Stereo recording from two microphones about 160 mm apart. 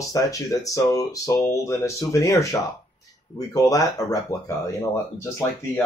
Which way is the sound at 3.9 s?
20° left (ahead or behind).